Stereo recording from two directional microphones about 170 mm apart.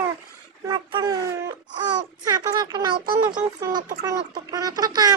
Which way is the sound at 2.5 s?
25° right (ahead or behind).